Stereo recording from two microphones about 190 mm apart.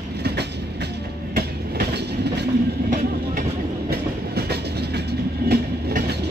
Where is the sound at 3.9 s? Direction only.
60° right (ahead or behind).